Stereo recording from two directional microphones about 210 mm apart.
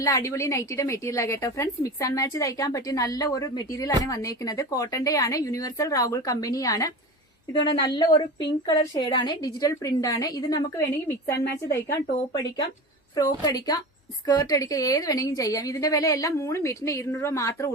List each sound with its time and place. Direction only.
0.0 s a woman's voice: 15° left (ahead or behind)
11.4 s a woman's voice: 50° left (ahead or behind)
13.1 s a woman's voice: 20° left (ahead or behind)